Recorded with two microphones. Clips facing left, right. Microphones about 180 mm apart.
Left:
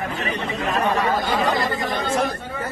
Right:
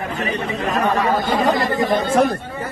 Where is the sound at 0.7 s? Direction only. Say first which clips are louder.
Right 2 dB; 40° right (ahead or behind).